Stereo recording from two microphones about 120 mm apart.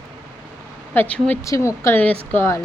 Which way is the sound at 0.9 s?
15° left (ahead or behind).